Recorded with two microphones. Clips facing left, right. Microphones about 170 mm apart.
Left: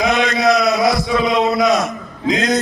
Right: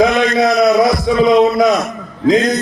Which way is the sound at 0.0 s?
50° right (ahead or behind).